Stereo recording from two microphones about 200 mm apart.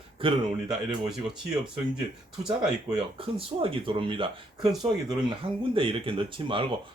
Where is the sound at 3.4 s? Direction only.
25° right (ahead or behind).